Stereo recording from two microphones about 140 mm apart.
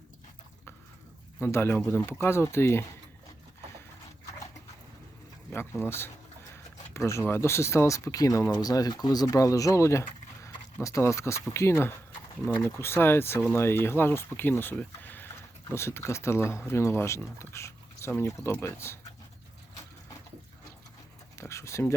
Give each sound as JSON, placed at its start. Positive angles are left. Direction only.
{"t": 1.4, "sound": "speech", "side_deg": 15}
{"t": 5.5, "sound": "speech", "side_deg": 15}
{"t": 21.3, "sound": "speech", "side_deg": 20}